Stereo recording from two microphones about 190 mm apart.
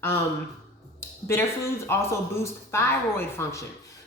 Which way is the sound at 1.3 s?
15° left (ahead or behind).